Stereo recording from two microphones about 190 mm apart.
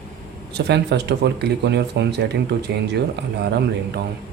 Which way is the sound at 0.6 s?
65° right (ahead or behind).